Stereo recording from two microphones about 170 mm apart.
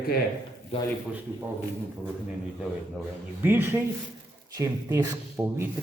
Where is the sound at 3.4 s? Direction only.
10° right (ahead or behind).